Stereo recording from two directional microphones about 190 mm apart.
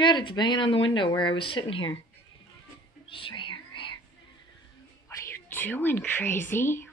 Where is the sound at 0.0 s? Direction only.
25° left (ahead or behind).